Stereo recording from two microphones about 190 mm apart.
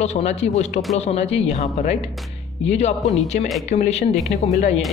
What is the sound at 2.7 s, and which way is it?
Speech, 35° left (ahead or behind).